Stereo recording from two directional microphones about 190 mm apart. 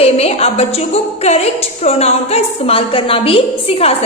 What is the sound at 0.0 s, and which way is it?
A woman's voice, 30° left (ahead or behind).